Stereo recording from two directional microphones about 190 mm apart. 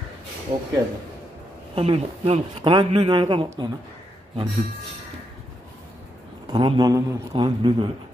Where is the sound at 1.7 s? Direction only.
30° right (ahead or behind).